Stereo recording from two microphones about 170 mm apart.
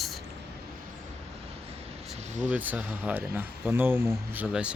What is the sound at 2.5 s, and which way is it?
Speech, 10° right (ahead or behind).